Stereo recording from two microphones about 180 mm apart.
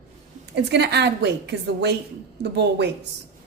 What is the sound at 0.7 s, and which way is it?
Speech, 70° right (ahead or behind).